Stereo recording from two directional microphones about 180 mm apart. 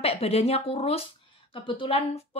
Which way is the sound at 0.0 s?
35° left (ahead or behind).